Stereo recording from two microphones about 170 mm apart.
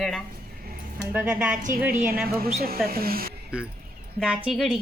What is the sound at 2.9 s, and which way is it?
Speech, 60° right (ahead or behind).